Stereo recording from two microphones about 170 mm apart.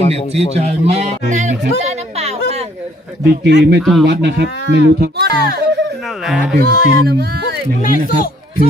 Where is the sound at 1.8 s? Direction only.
40° right (ahead or behind).